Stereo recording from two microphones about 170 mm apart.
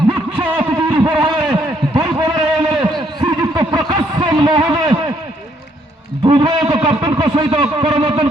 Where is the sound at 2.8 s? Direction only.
25° right (ahead or behind).